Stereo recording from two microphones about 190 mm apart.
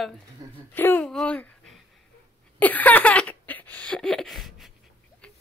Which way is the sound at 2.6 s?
10° left (ahead or behind).